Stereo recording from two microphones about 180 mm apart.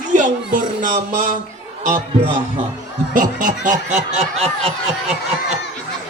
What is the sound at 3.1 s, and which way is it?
A man's voice, 45° right (ahead or behind).